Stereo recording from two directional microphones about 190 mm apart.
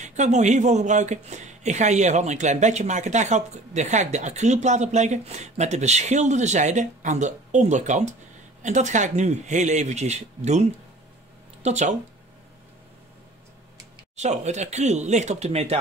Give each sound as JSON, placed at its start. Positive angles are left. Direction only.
{"t": 0.0, "sound": "speech", "side_deg": -40}
{"t": 14.1, "sound": "speech", "side_deg": -35}